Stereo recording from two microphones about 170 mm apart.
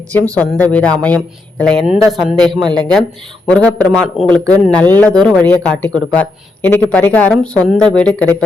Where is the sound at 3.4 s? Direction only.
5° left (ahead or behind).